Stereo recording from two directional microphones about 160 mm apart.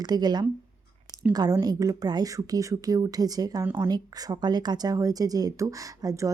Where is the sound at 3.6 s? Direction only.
15° right (ahead or behind).